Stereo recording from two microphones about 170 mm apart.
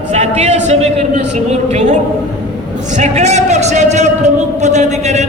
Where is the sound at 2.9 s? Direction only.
40° right (ahead or behind).